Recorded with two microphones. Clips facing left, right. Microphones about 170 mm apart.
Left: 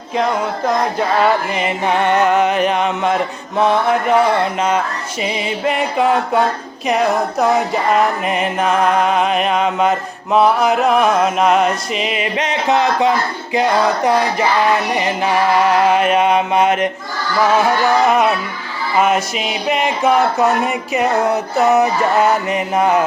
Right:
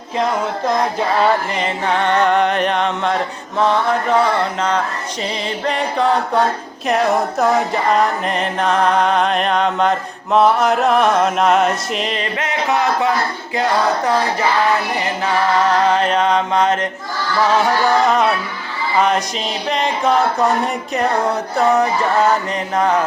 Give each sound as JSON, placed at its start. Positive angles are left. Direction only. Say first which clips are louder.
{"t": 1.2, "sound": "music", "louder": "even", "side_deg": 10}
{"t": 12.4, "sound": "music", "louder": "left 3 dB", "side_deg": 20}
{"t": 18.9, "sound": "music", "louder": "left 1 dB", "side_deg": 10}
{"t": 21.6, "sound": "music", "louder": "left 1 dB", "side_deg": 5}